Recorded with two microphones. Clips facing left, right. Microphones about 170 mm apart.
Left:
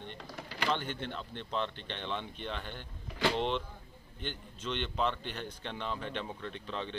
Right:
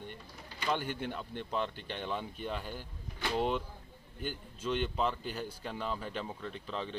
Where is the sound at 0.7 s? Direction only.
10° right (ahead or behind).